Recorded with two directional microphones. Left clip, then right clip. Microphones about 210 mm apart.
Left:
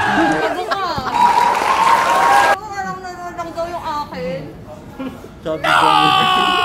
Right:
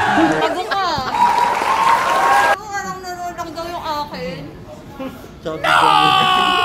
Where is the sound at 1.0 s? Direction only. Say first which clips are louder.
Left 3 dB; centre (ahead or behind).